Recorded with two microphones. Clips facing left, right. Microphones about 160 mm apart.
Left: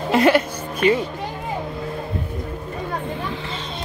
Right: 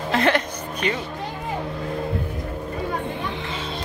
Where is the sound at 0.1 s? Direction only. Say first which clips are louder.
Left 5 dB; 10° left (ahead or behind).